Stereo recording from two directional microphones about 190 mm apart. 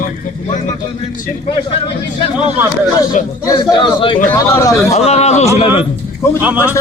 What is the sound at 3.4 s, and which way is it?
Speech, 20° left (ahead or behind).